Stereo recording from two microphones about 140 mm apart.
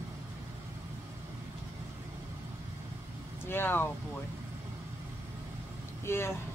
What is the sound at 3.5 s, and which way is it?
Speech, 15° left (ahead or behind).